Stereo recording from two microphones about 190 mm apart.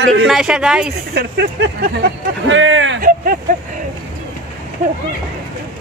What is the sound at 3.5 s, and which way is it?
Speech, 45° right (ahead or behind).